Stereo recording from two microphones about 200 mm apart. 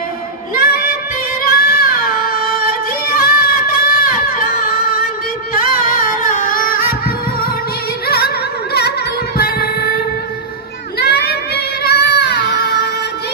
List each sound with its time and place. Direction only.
0.6 s music: 50° left (ahead or behind)
9.4 s music: 50° left (ahead or behind)
11.0 s child singing: 55° left (ahead or behind)